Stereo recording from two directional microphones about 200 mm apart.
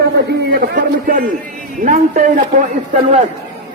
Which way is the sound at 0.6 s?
45° right (ahead or behind).